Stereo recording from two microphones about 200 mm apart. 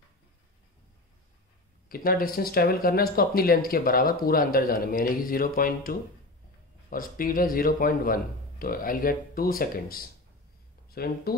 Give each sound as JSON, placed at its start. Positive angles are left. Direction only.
{"t": 1.9, "sound": "speech", "side_deg": 45}